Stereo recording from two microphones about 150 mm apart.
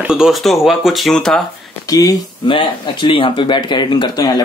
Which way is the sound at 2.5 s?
35° left (ahead or behind).